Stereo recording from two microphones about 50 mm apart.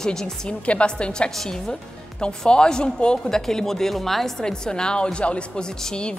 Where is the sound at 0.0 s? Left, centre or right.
Centre.